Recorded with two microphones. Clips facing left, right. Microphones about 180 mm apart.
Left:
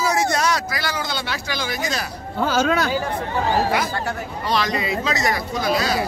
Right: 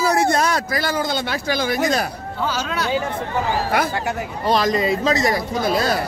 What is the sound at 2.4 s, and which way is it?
Speech, 50° left (ahead or behind).